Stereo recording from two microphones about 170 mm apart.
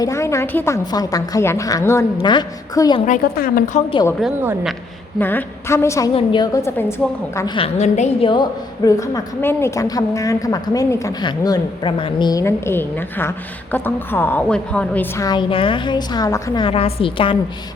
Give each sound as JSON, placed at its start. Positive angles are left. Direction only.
{"t": 0.0, "sound": "a woman's voice", "side_deg": 15}
{"t": 3.1, "sound": "a woman's voice", "side_deg": 60}
{"t": 3.8, "sound": "a woman's voice", "side_deg": 30}
{"t": 5.2, "sound": "a woman's voice", "side_deg": 10}
{"t": 7.3, "sound": "a woman's voice", "side_deg": 25}
{"t": 8.3, "sound": "a woman's voice", "side_deg": 25}
{"t": 15.2, "sound": "a woman's voice", "side_deg": 25}
{"t": 16.6, "sound": "a woman's voice", "side_deg": 35}